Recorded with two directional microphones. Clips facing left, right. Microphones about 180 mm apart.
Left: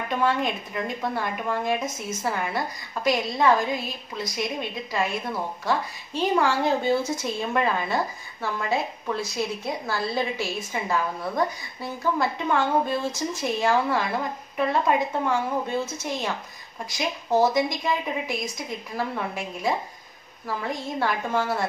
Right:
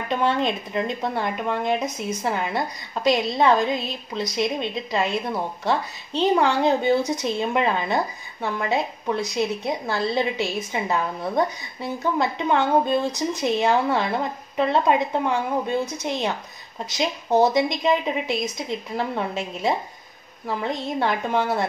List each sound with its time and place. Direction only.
0.1 s a woman's voice: 25° right (ahead or behind)